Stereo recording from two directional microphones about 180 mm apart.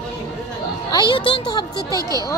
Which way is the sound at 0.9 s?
25° left (ahead or behind).